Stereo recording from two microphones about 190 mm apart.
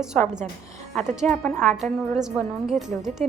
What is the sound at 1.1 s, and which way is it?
A woman's voice, centre (ahead or behind).